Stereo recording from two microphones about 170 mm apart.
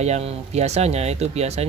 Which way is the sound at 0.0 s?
40° right (ahead or behind).